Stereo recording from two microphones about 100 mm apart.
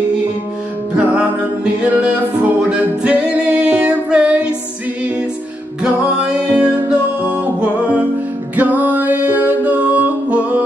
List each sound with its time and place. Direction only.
0.9 s music: 10° right (ahead or behind)
5.8 s music: 10° right (ahead or behind)